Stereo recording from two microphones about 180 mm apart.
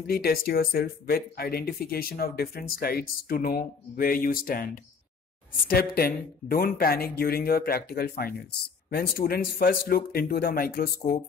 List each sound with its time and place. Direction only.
0.0 s speech: 55° left (ahead or behind)
5.9 s speech: 55° left (ahead or behind)